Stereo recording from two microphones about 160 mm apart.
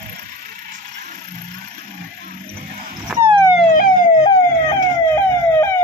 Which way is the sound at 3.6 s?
60° left (ahead or behind).